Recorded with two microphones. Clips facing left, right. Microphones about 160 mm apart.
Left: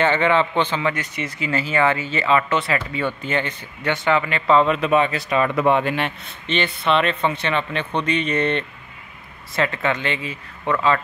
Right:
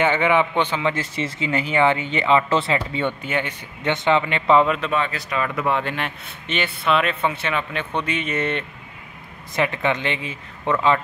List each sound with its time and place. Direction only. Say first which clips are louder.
0.0 s a man's voice: even; 10° right (ahead or behind)
0.9 s speech: right 2 dB; 25° right (ahead or behind)
3.2 s a man's voice: left 1 dB; 10° right (ahead or behind)
4.8 s speech: left 5 dB; 15° left (ahead or behind)
6.4 s a man's voice: left 2 dB; 5° right (ahead or behind)
9.6 s speech: even; 20° right (ahead or behind)